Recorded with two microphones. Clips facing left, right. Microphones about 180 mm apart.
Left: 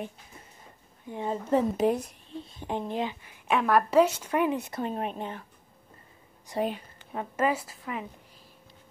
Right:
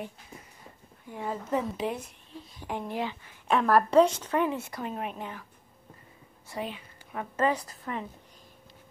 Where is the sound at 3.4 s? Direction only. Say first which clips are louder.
Right 1 dB; centre (ahead or behind); by 4.8 s 20° left (ahead or behind).